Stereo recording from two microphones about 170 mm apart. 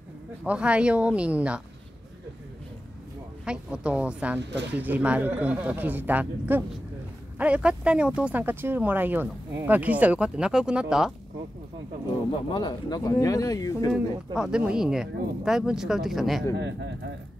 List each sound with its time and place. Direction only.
0.4 s speech: 5° right (ahead or behind)
3.4 s speech: 5° right (ahead or behind)
4.4 s a man's voice: 90° right
4.7 s speech: 10° right (ahead or behind)
12.4 s speech: 25° left (ahead or behind)
13.9 s speech: 5° right (ahead or behind)
16.5 s a man's voice: 90° right